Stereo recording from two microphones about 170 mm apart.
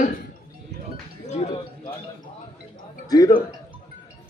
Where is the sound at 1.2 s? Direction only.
40° left (ahead or behind).